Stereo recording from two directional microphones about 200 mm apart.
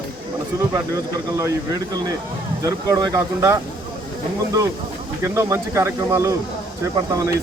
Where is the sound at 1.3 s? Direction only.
15° right (ahead or behind).